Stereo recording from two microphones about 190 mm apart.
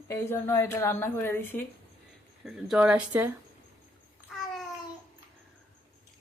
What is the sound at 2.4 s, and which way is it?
Speech, 5° right (ahead or behind).